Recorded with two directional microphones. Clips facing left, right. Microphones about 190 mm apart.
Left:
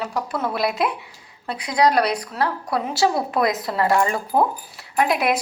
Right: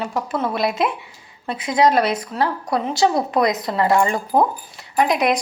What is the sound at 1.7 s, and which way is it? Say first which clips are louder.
Speech: right 2 dB; 25° right (ahead or behind).